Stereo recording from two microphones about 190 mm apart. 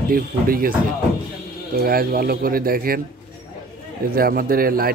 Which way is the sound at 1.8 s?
50° right (ahead or behind).